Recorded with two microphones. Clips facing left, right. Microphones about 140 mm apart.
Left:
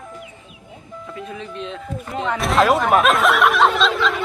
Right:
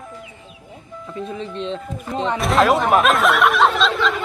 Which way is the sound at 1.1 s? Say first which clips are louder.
Right 4 dB; 30° right (ahead or behind).